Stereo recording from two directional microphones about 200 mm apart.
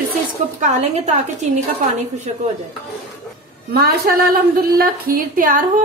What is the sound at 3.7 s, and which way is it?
A woman's voice, 50° right (ahead or behind).